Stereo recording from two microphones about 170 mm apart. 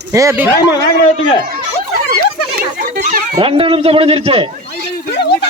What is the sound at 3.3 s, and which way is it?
A man's voice, 35° right (ahead or behind).